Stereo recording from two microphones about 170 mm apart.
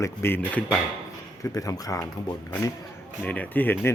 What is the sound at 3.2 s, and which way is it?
Speech, 10° left (ahead or behind).